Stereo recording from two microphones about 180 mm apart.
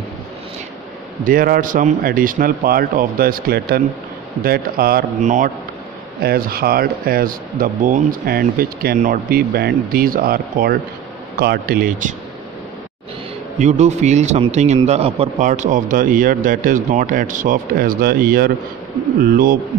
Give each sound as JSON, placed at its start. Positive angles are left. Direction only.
{"t": 1.2, "sound": "a man's voice", "side_deg": -50}
{"t": 5.2, "sound": "a man's voice", "side_deg": -45}
{"t": 6.2, "sound": "a man's voice", "side_deg": -55}
{"t": 13.6, "sound": "a man's voice", "side_deg": -40}